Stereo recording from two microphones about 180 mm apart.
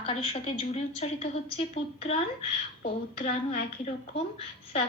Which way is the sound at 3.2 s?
55° left (ahead or behind).